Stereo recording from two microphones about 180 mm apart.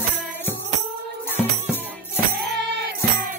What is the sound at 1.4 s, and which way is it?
Music, centre (ahead or behind).